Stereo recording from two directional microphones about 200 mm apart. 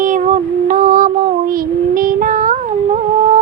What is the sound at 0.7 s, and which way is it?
Female singing, 40° right (ahead or behind).